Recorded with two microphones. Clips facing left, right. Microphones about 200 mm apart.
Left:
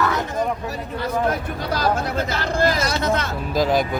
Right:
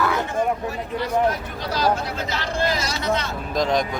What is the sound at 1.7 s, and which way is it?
Speech, 50° left (ahead or behind).